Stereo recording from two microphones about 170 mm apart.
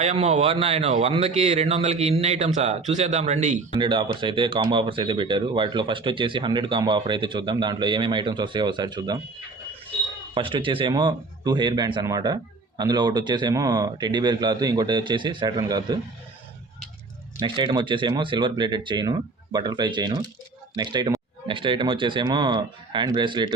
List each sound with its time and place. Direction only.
0.0 s a man's voice: 40° right (ahead or behind)
3.7 s speech: 30° right (ahead or behind)
10.3 s speech: 30° right (ahead or behind)
17.4 s speech: 30° right (ahead or behind)